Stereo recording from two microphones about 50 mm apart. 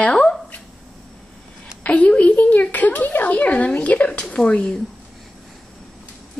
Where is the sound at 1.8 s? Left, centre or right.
Left.